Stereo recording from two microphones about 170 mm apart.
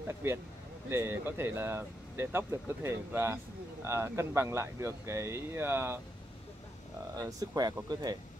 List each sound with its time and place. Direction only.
0.2 s speech: 15° right (ahead or behind)
7.2 s speech: 20° right (ahead or behind)